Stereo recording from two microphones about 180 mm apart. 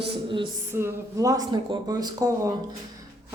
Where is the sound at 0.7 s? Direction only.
15° right (ahead or behind).